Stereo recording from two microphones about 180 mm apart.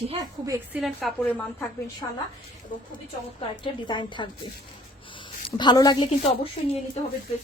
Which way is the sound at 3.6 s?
25° left (ahead or behind).